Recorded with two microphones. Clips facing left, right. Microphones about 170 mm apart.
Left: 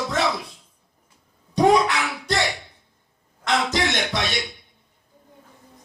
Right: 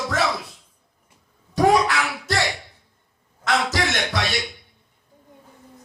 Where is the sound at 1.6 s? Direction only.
20° left (ahead or behind).